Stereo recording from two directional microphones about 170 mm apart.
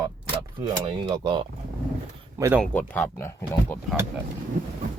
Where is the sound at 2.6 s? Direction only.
10° left (ahead or behind).